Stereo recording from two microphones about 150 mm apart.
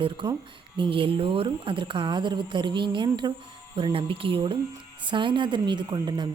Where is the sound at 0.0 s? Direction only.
35° right (ahead or behind).